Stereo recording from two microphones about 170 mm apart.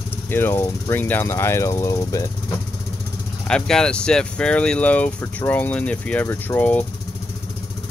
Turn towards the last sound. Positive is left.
turn(degrees=10)  # may be behind; listen again after turning